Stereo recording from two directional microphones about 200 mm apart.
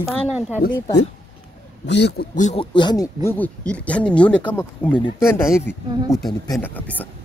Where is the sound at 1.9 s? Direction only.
55° left (ahead or behind).